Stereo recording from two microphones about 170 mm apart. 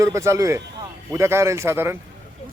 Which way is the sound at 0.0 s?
20° right (ahead or behind).